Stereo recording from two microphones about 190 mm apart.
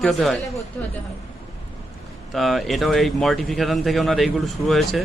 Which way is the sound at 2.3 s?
Centre (ahead or behind).